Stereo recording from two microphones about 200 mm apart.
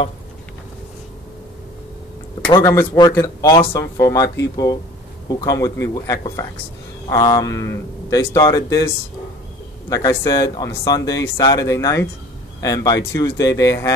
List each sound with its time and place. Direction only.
2.4 s speech: 15° left (ahead or behind)
9.8 s speech: 20° left (ahead or behind)